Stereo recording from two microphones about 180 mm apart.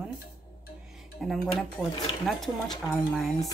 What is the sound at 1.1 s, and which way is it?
Speech, centre (ahead or behind).